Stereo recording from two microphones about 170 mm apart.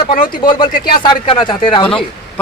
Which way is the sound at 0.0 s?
55° left (ahead or behind).